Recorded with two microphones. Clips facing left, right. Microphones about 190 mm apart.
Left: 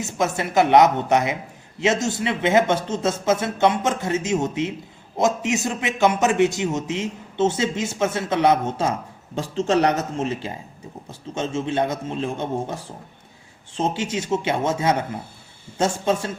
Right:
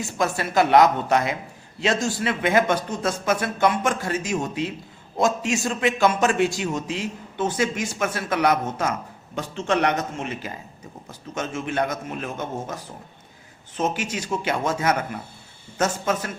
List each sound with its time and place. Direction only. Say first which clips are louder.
0.0 s a man's voice: left 1 dB; 20° left (ahead or behind)